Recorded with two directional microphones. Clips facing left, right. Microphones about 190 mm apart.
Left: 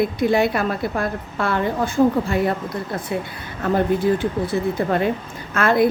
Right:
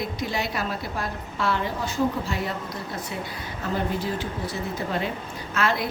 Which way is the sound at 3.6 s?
55° left (ahead or behind).